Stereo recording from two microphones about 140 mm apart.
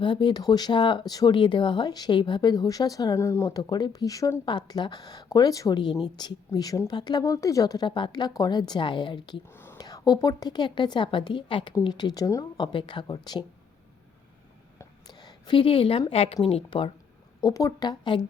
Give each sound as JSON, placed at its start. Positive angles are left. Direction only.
{"t": 0.0, "sound": "speech", "side_deg": 35}
{"t": 9.5, "sound": "a sound", "side_deg": 15}
{"t": 9.7, "sound": "speech", "side_deg": 25}
{"t": 15.1, "sound": "a woman's voice", "side_deg": 30}
{"t": 17.4, "sound": "speech", "side_deg": 25}